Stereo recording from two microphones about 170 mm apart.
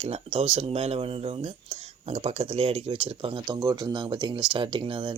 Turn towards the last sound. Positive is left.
turn(degrees=-30)  # may be behind; listen again after turning